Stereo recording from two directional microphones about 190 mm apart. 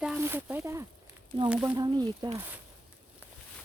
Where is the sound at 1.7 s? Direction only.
20° right (ahead or behind).